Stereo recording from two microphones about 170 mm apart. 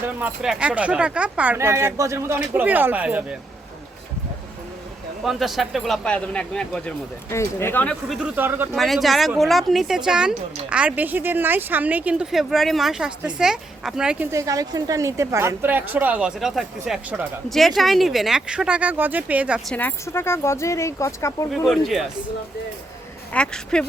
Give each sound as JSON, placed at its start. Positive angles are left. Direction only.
{"t": 0.0, "sound": "speech", "side_deg": -10}
{"t": 5.2, "sound": "speech", "side_deg": 0}
{"t": 8.0, "sound": "speech", "side_deg": 0}
{"t": 8.4, "sound": "speech", "side_deg": -10}
{"t": 8.7, "sound": "speech", "side_deg": 0}
{"t": 14.3, "sound": "speech", "side_deg": -20}
{"t": 19.7, "sound": "speech", "side_deg": 10}
{"t": 21.5, "sound": "speech", "side_deg": 0}
{"t": 23.3, "sound": "speech", "side_deg": 5}